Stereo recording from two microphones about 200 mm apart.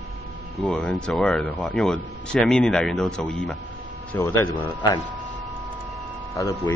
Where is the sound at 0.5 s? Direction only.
5° left (ahead or behind).